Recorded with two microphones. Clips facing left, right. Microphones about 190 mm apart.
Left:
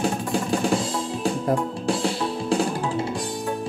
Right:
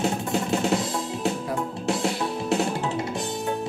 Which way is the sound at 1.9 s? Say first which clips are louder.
Left 1 dB; 25° right (ahead or behind).